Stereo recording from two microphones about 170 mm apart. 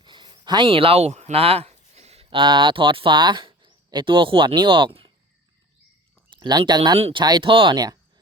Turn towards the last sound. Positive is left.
turn(degrees=-25)  # may be behind; listen again after turning